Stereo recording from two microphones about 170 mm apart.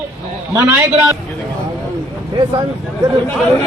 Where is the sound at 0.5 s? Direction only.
10° right (ahead or behind).